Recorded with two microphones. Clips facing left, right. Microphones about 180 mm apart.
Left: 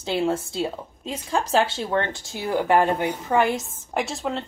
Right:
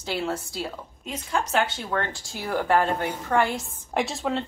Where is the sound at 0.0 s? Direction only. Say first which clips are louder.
Left 5 dB; 25° left (ahead or behind).